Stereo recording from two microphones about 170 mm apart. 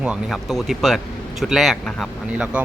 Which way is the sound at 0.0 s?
5° right (ahead or behind).